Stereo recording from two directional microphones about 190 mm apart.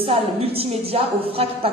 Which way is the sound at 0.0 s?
30° right (ahead or behind).